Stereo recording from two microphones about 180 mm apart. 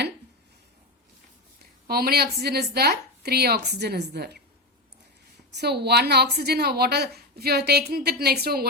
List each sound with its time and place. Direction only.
1.9 s a woman's voice: 60° right (ahead or behind)
5.5 s a woman's voice: 65° right (ahead or behind)